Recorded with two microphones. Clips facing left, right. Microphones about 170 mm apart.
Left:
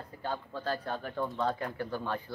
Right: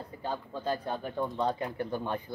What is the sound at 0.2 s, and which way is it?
Speech, 15° right (ahead or behind).